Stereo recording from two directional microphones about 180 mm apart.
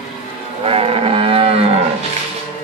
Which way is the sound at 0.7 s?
35° right (ahead or behind).